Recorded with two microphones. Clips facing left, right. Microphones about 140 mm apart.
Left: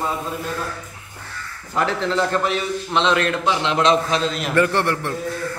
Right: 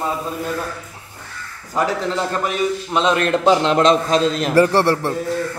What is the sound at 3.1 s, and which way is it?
A man's voice, 45° right (ahead or behind).